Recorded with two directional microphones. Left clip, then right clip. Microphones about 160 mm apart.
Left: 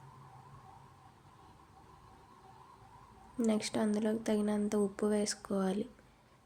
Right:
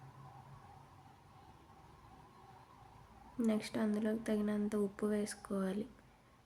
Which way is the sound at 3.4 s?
25° left (ahead or behind).